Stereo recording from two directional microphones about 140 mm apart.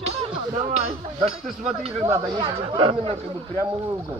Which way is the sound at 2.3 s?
40° right (ahead or behind).